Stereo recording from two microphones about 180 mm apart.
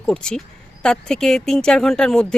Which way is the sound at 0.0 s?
5° left (ahead or behind).